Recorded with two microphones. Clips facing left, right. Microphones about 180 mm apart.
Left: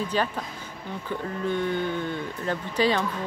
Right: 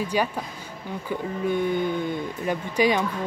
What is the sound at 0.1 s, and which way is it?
Speech, 10° right (ahead or behind).